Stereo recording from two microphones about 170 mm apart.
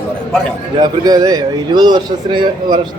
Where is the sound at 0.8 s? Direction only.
20° right (ahead or behind).